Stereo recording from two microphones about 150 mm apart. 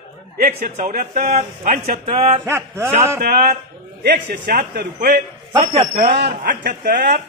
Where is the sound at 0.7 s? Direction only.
60° right (ahead or behind).